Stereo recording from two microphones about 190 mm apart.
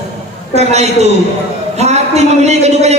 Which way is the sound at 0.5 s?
35° right (ahead or behind).